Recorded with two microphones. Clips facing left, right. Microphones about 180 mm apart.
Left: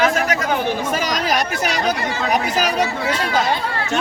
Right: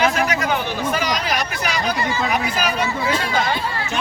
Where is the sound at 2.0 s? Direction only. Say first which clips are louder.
Right 1 dB; 65° left (ahead or behind).